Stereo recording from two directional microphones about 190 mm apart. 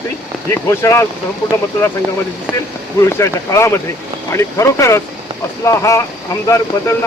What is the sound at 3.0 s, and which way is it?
Speech, 15° left (ahead or behind).